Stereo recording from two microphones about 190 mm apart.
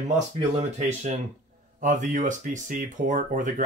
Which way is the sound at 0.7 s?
35° right (ahead or behind).